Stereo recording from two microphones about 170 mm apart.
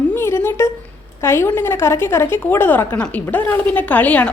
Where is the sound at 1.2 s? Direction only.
15° left (ahead or behind).